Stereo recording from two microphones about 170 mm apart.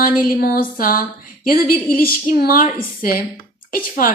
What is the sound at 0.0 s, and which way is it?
A woman's voice, 55° left (ahead or behind).